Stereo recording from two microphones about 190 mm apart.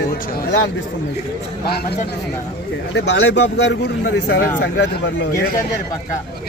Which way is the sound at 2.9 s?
70° left (ahead or behind).